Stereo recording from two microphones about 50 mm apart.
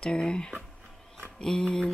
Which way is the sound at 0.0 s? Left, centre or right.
Centre.